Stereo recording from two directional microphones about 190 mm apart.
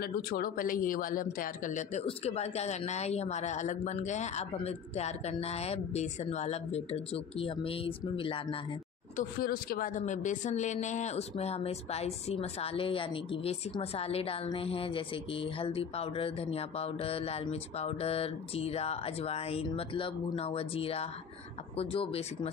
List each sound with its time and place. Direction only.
0.0 s speech: 50° left (ahead or behind); by 8.5 s 30° left (ahead or behind)
9.1 s speech: 50° left (ahead or behind); by 22.5 s 30° left (ahead or behind)